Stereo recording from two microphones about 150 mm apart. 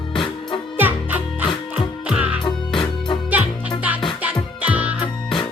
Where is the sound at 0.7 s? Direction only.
10° right (ahead or behind).